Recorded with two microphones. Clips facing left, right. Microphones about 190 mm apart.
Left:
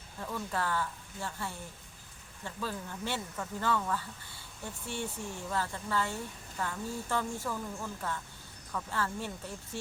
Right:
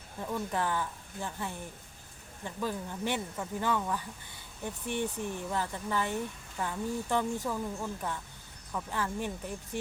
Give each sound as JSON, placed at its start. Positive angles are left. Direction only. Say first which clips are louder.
{"t": 0.2, "sound": "speech", "louder": "right 3 dB", "side_deg": -15}